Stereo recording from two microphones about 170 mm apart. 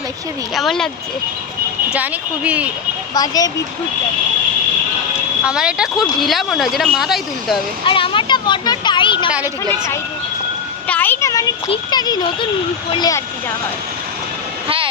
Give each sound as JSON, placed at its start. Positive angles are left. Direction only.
{"t": 0.5, "sound": "speech", "side_deg": 0}
{"t": 1.9, "sound": "speech", "side_deg": -10}
{"t": 3.2, "sound": "a child's voice", "side_deg": 20}
{"t": 5.5, "sound": "speech", "side_deg": -5}
{"t": 7.9, "sound": "a sound", "side_deg": 30}
{"t": 10.8, "sound": "a sound", "side_deg": 10}
{"t": 11.7, "sound": "a child's voice", "side_deg": 25}